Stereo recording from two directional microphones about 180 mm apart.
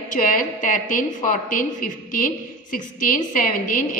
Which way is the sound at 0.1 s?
50° left (ahead or behind).